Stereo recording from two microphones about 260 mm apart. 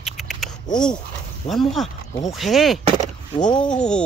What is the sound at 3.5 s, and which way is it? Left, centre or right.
Speech, centre.